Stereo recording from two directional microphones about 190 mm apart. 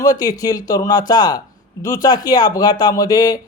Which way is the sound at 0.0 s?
20° left (ahead or behind).